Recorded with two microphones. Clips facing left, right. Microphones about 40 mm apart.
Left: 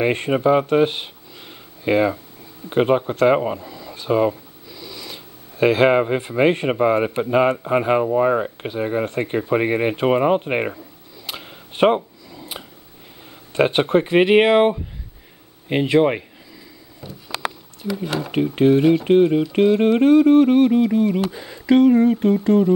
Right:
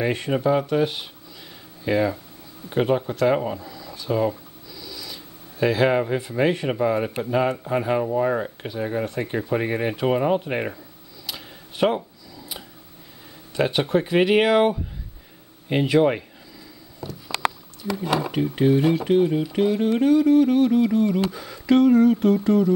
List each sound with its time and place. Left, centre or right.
0.0 s speech: left
3.3 s speech: left
3.9 s speech: left
11.2 s a sound: left
13.5 s speech: left; by 17.2 s centre
18.3 s speech: left
18.8 s speech: centre
19.0 s music: left
20.8 s speech: centre
22.4 s speech: left